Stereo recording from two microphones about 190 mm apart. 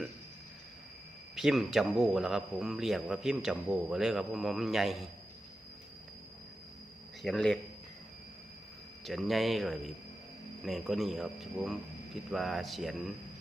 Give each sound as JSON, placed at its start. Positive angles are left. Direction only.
{"t": 1.4, "sound": "a man's voice", "side_deg": 0}
{"t": 7.2, "sound": "a man's voice", "side_deg": 0}
{"t": 9.0, "sound": "a man's voice", "side_deg": 0}